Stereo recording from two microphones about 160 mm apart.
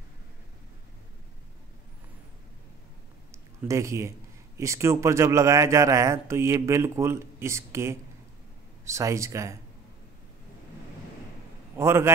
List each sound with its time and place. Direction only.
3.3 s a sound: 20° right (ahead or behind)
4.6 s speech: 15° right (ahead or behind)
11.7 s a man's voice: 15° right (ahead or behind)